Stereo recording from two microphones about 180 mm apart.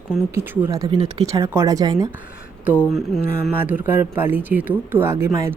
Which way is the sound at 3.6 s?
10° right (ahead or behind).